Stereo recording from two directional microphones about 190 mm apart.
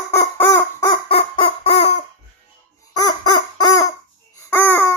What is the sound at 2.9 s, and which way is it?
Fowl, 20° left (ahead or behind).